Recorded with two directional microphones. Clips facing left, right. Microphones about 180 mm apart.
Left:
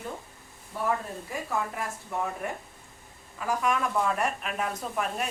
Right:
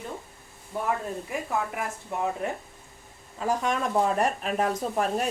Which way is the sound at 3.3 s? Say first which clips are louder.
Right 1 dB; 30° right (ahead or behind).